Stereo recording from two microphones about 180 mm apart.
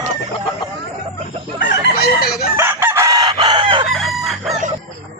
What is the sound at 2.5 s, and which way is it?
Chicken, 10° right (ahead or behind).